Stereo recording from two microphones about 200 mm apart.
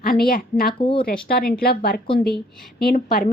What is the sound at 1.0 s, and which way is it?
A woman's voice, 45° left (ahead or behind).